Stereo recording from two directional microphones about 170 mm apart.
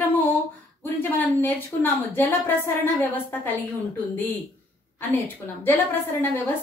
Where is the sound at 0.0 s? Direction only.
10° left (ahead or behind).